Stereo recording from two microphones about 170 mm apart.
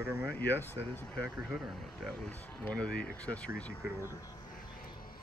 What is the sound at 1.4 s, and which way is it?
Speech, centre (ahead or behind).